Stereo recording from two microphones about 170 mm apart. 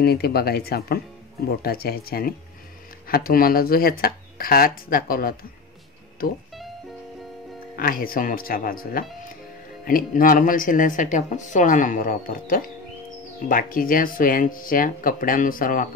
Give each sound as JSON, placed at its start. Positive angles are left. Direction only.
{"t": 0.0, "sound": "speech", "side_deg": 65}
{"t": 7.7, "sound": "speech", "side_deg": 60}